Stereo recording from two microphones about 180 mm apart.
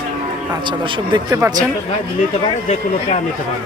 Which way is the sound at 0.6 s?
25° right (ahead or behind).